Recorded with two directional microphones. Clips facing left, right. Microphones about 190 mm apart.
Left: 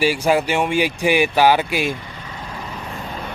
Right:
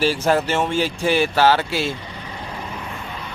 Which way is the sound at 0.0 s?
10° left (ahead or behind).